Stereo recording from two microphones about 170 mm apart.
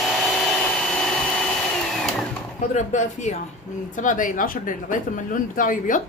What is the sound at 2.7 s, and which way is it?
Speech, 45° left (ahead or behind).